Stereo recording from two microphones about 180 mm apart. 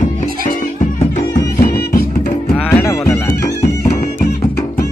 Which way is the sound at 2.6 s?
15° left (ahead or behind).